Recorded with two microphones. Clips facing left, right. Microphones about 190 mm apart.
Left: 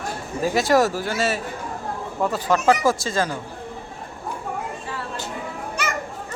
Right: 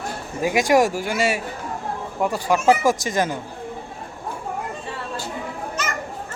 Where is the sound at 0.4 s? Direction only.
15° right (ahead or behind).